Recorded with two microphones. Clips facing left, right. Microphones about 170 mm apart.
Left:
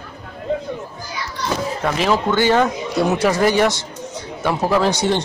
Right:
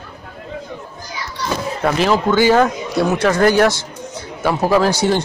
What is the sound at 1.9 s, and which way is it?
A man's voice, 5° right (ahead or behind).